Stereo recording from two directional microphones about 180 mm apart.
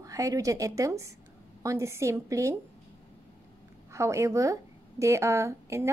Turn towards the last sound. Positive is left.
turn(degrees=-15)  # may be behind; listen again after turning